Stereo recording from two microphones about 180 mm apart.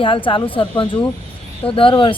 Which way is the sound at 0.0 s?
30° left (ahead or behind).